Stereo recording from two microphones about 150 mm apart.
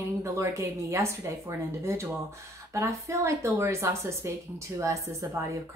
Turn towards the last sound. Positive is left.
turn(degrees=-20)  # may be behind; listen again after turning